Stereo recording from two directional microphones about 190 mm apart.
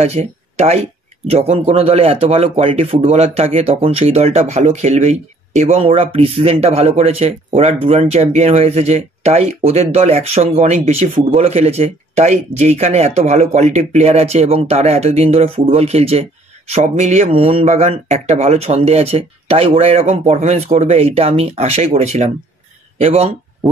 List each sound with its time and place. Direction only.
0.0 s speech: 35° right (ahead or behind)